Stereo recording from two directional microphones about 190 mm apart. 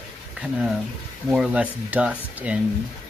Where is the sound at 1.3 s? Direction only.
5° right (ahead or behind).